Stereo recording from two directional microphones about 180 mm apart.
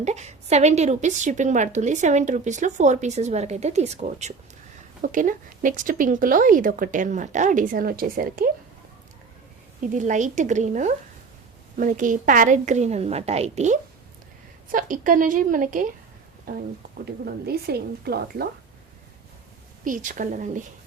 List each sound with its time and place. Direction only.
0.0 s a woman's voice: 40° right (ahead or behind)
9.8 s a woman's voice: 45° right (ahead or behind)
14.7 s a woman's voice: 50° right (ahead or behind)
19.8 s speech: 45° right (ahead or behind)